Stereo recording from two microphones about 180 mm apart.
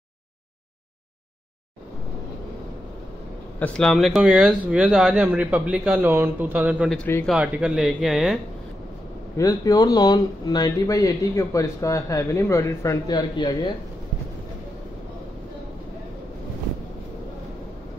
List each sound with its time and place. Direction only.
3.5 s speech: 5° left (ahead or behind)
7.0 s speech: 10° left (ahead or behind)
7.3 s speech: 5° right (ahead or behind)
9.4 s speech: 20° left (ahead or behind)